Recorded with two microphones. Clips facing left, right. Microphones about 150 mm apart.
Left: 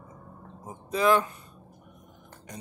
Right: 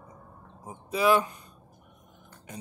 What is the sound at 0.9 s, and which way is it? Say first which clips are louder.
Speech: even; 10° right (ahead or behind).